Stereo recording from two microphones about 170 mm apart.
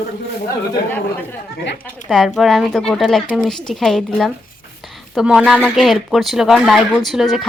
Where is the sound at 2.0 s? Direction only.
5° left (ahead or behind).